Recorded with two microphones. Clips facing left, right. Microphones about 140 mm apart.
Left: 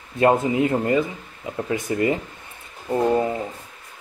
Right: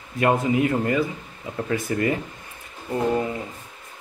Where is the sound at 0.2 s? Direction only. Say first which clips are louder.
Left 2 dB; 25° left (ahead or behind).